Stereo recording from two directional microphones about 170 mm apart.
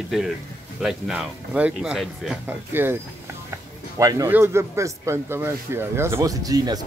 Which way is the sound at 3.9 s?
15° right (ahead or behind).